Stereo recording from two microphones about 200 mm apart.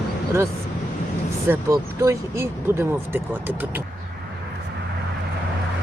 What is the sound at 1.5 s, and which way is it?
Speech, 15° right (ahead or behind).